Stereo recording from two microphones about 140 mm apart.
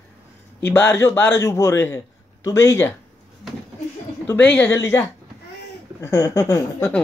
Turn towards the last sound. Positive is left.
turn(degrees=20)  # may be behind; listen again after turning